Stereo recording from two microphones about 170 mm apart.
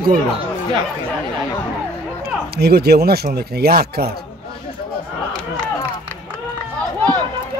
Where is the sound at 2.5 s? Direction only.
65° right (ahead or behind).